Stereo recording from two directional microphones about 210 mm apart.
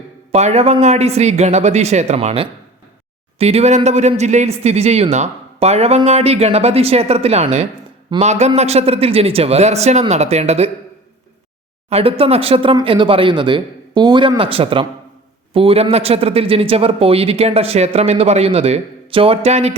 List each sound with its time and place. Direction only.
0.3 s a man's voice: 30° right (ahead or behind)
11.9 s speech: 30° right (ahead or behind)